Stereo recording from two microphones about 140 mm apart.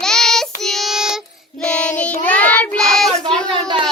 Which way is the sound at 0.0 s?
5° left (ahead or behind).